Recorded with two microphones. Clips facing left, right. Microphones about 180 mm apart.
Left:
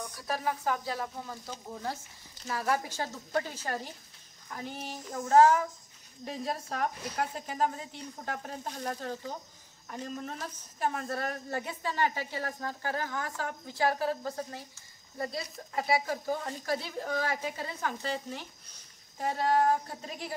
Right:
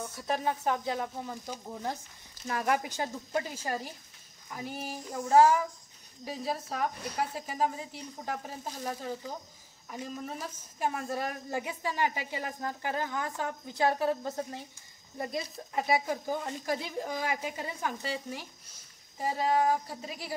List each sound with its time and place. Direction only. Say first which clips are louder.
0.1 s speech: right 2 dB; 20° right (ahead or behind); by 20.3 s 5° right (ahead or behind)